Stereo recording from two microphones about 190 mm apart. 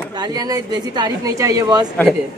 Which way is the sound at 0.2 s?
20° right (ahead or behind).